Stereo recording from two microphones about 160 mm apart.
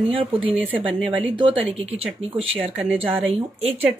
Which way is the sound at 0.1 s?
35° right (ahead or behind).